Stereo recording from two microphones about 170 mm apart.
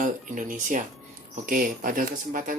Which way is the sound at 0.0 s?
50° right (ahead or behind).